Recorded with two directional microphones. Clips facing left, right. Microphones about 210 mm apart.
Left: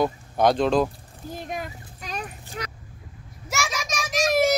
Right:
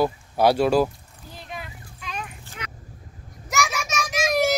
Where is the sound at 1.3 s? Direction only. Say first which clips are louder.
Left 5 dB; 45° left (ahead or behind).